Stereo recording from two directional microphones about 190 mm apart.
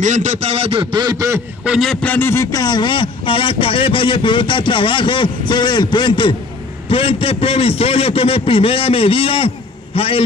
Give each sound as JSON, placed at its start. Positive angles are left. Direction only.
{"t": 0.0, "sound": "a man's voice", "side_deg": -40}
{"t": 1.7, "sound": "a man's voice", "side_deg": 0}